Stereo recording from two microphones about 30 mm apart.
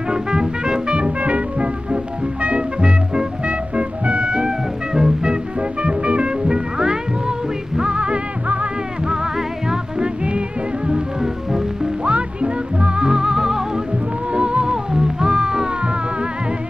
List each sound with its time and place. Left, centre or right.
0.1 s music: right
1.2 s music: right
4.4 s music: right
5.6 s music: right
6.8 s music: right
9.0 s music: right
12.0 s music: right
13.0 s music: right
14.3 s music: right